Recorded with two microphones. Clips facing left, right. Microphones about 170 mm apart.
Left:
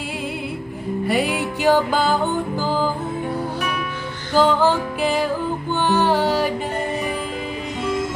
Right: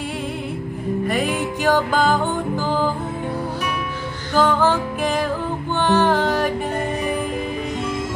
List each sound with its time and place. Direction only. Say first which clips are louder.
1.0 s music: left 2 dB; 10° left (ahead or behind)
4.4 s music: left 1 dB; 10° left (ahead or behind)